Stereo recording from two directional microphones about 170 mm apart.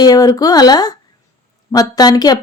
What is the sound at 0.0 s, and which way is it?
A woman's voice, 25° left (ahead or behind).